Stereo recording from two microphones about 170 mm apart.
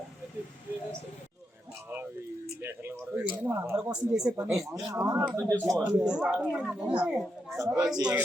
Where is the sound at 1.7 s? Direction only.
15° right (ahead or behind).